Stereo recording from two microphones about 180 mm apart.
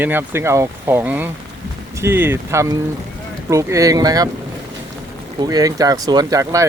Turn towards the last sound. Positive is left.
turn(degrees=-20)  # may be behind; listen again after turning